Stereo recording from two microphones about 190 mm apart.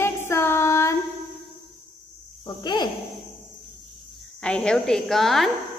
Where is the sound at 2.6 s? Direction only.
20° left (ahead or behind).